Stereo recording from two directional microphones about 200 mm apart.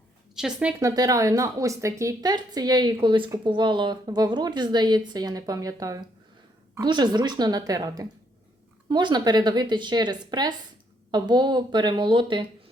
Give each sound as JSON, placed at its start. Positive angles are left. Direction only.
{"t": 0.3, "sound": "speech", "side_deg": -5}